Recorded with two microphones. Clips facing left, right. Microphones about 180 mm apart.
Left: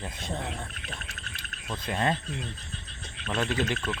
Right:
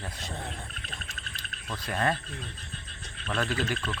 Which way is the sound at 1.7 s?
20° left (ahead or behind).